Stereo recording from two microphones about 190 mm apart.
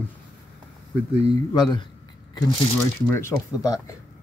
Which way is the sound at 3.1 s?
15° left (ahead or behind).